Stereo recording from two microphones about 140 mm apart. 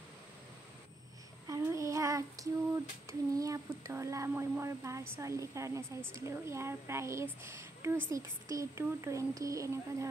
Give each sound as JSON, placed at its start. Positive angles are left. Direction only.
{"t": 1.5, "sound": "child singing", "side_deg": -20}
{"t": 3.1, "sound": "speech", "side_deg": -25}